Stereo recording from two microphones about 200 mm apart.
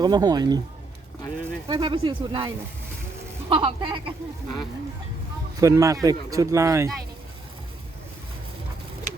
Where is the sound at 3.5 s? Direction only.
25° right (ahead or behind).